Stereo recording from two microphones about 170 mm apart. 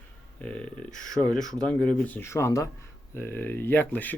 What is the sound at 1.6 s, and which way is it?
Speech, 5° left (ahead or behind).